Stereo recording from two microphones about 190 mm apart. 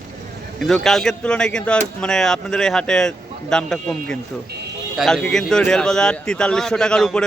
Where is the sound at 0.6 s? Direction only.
Centre (ahead or behind).